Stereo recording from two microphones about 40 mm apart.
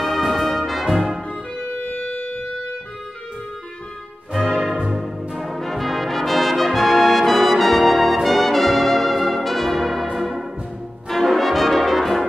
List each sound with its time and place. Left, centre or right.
0.0 s brass instrument: centre
1.6 s music: left
4.3 s music: centre
4.9 s brass instrument: centre
10.1 s music: centre
11.1 s brass instrument: centre